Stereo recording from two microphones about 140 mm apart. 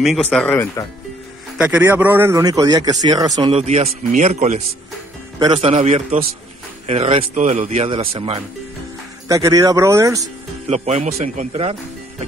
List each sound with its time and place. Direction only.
0.3 s speech: 10° left (ahead or behind)
1.6 s a man's voice: 10° right (ahead or behind); by 3.4 s 25° right (ahead or behind)
3.4 s speech: 45° right (ahead or behind)
9.3 s speech: 25° right (ahead or behind)
10.7 s speech: 50° right (ahead or behind)